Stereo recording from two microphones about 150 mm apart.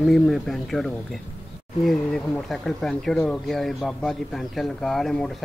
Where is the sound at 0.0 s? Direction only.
Centre (ahead or behind).